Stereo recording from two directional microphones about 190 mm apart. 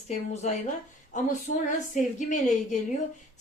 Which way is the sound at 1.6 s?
40° left (ahead or behind).